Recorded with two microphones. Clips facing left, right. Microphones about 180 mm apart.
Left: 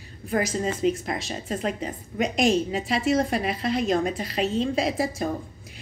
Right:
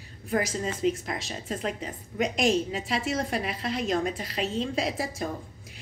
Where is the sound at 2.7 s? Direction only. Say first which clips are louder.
Left 6 dB; 40° left (ahead or behind).